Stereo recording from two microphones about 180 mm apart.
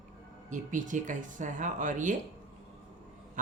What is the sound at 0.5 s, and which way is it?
Speech, 45° right (ahead or behind).